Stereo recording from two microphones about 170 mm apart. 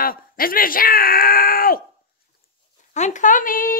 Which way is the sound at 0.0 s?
60° left (ahead or behind).